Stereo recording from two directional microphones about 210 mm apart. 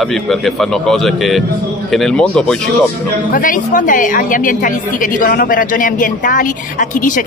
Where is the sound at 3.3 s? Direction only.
40° left (ahead or behind).